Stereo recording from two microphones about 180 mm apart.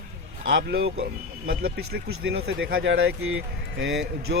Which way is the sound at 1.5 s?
55° right (ahead or behind).